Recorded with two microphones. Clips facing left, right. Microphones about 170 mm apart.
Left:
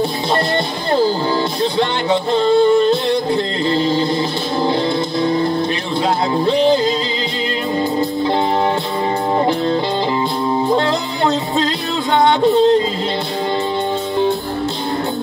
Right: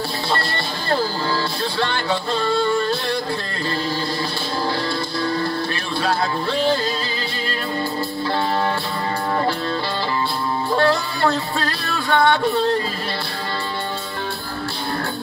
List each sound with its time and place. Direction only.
1.6 s music: 20° left (ahead or behind)
3.6 s a sound: 20° left (ahead or behind)
5.2 s music: 20° left (ahead or behind)
10.7 s music: 20° left (ahead or behind)